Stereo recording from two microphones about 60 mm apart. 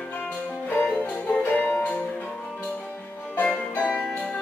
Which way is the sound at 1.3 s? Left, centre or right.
Left.